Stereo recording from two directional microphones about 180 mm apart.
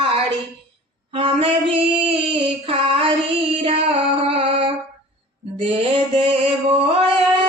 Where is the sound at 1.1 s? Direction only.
30° right (ahead or behind).